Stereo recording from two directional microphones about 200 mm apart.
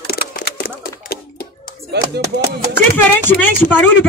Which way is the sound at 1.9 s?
55° right (ahead or behind).